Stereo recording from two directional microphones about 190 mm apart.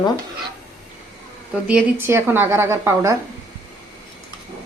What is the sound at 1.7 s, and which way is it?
A woman's voice, 10° right (ahead or behind).